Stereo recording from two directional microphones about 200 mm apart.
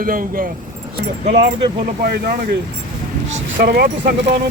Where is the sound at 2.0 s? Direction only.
50° right (ahead or behind).